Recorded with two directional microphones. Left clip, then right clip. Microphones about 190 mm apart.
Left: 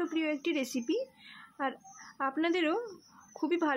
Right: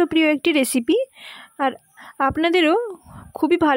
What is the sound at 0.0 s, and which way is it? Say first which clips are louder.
A woman's voice: right 15 dB; 50° right (ahead or behind).